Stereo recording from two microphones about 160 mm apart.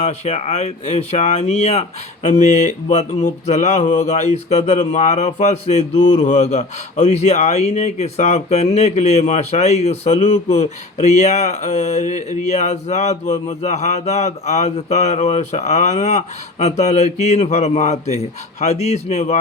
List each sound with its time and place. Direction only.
0.0 s mantra: 45° left (ahead or behind)